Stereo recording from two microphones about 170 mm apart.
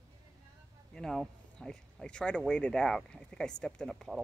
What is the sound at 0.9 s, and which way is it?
Speech, 5° left (ahead or behind).